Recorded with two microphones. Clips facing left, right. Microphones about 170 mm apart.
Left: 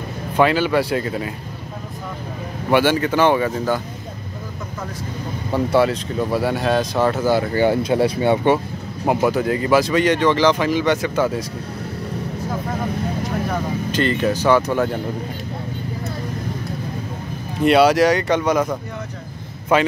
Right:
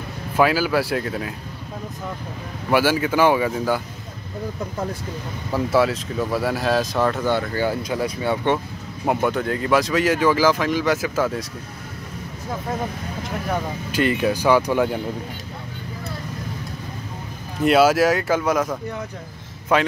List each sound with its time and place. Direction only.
0.4 s speech: 5° right (ahead or behind)
2.7 s speech: 5° right (ahead or behind)
5.5 s speech: centre (ahead or behind)
7.5 s speech: 25° left (ahead or behind)
9.0 s speech: 5° left (ahead or behind)
13.9 s speech: 10° right (ahead or behind)
17.6 s speech: 5° right (ahead or behind)